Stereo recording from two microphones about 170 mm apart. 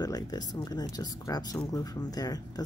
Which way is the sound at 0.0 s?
25° left (ahead or behind).